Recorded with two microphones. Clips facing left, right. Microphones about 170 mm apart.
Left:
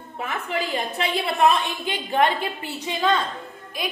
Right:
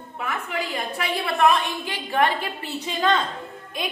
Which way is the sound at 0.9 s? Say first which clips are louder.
Even; 25° left (ahead or behind).